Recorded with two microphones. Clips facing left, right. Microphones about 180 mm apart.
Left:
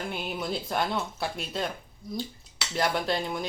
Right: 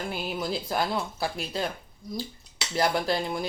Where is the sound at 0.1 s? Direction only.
Centre (ahead or behind).